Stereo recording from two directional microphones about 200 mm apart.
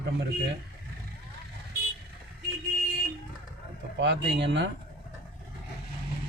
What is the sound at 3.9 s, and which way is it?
Speech, 60° right (ahead or behind).